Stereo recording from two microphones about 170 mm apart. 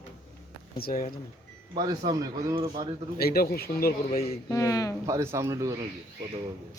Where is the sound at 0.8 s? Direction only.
60° left (ahead or behind).